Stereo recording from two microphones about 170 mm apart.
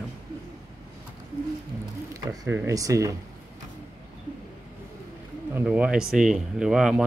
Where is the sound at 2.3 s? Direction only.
15° right (ahead or behind).